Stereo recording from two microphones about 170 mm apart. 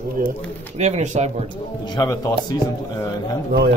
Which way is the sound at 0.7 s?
40° right (ahead or behind).